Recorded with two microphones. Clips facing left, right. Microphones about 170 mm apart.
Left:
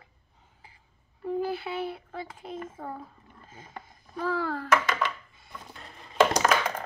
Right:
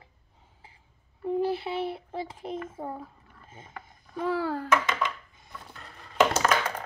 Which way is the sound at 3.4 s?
25° right (ahead or behind).